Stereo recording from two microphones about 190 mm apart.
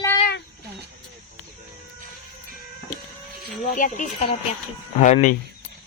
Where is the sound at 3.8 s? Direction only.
45° left (ahead or behind).